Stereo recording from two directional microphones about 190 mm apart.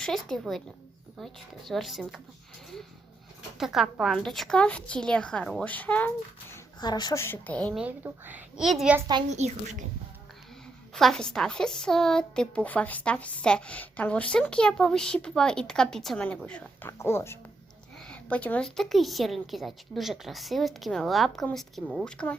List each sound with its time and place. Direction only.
0.0 s a woman's voice: centre (ahead or behind)
3.6 s a woman's voice: centre (ahead or behind)
6.5 s a woman's voice: 20° left (ahead or behind); by 9.0 s centre (ahead or behind)
9.0 s a child's voice: 20° right (ahead or behind)
9.3 s a woman's voice: 35° right (ahead or behind)
10.9 s a woman's voice: centre (ahead or behind)